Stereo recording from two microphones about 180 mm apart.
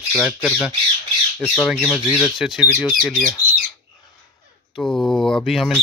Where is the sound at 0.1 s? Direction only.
5° left (ahead or behind).